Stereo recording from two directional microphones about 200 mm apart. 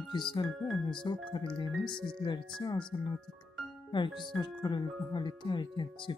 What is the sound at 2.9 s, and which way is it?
Speech, 20° left (ahead or behind).